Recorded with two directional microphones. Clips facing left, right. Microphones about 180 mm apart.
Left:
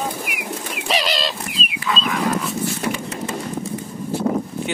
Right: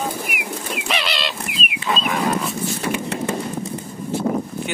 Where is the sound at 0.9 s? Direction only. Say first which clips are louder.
Left 4 dB; 40° left (ahead or behind).